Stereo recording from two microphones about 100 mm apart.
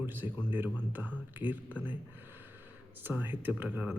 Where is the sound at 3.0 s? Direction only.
20° right (ahead or behind).